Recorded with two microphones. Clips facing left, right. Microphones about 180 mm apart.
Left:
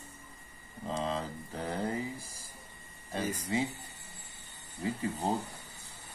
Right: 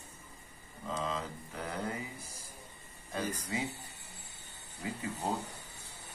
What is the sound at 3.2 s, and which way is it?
Speech, 10° left (ahead or behind).